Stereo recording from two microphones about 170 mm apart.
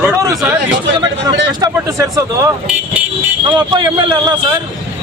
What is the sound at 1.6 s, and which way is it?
Speech, 15° right (ahead or behind).